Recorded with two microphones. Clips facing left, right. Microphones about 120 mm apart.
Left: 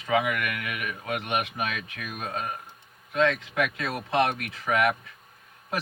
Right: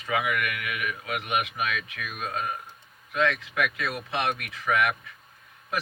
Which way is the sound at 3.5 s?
25° left (ahead or behind).